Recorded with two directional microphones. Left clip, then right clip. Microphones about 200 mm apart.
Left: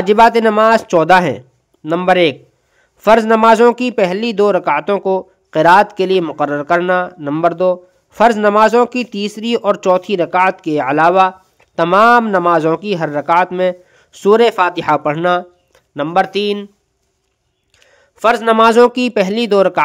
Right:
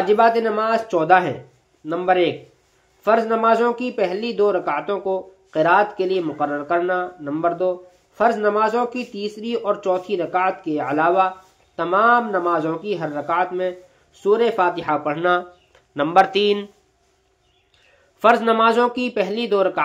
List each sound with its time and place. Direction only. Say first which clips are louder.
0.0 s a man's voice: left 7 dB; 40° left (ahead or behind)
18.2 s a man's voice: left 5 dB; 40° left (ahead or behind)